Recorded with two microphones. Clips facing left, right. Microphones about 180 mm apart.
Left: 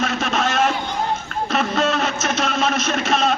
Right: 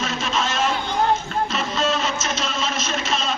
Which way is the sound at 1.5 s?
60° left (ahead or behind).